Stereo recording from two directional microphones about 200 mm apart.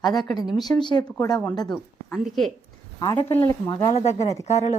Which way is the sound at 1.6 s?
Centre (ahead or behind).